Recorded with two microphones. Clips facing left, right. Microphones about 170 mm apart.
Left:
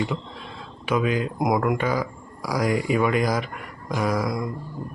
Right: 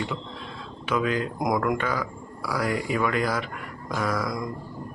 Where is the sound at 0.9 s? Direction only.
15° left (ahead or behind).